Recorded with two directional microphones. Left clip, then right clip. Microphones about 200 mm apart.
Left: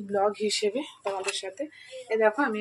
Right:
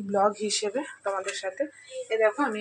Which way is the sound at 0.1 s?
10° left (ahead or behind).